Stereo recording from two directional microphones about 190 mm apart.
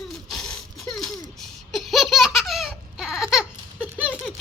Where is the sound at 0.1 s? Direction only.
Centre (ahead or behind).